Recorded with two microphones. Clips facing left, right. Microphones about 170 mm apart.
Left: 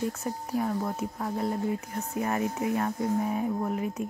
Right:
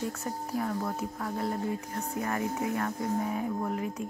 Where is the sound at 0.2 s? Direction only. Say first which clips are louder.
Left 3 dB; 20° left (ahead or behind).